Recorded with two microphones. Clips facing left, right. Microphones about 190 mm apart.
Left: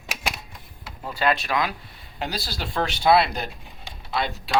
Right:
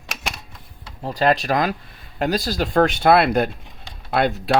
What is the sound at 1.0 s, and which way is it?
Speech, 40° right (ahead or behind).